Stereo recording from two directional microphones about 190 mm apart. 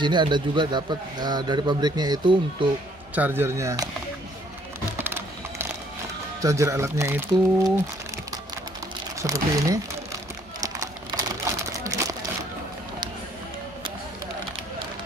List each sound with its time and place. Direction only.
0.0 s a man's voice: 25° right (ahead or behind)
3.2 s speech: 10° right (ahead or behind)
4.9 s music: 10° right (ahead or behind)
6.4 s speech: 15° right (ahead or behind)
9.2 s speech: 15° right (ahead or behind)
10.6 s a sound: 20° right (ahead or behind)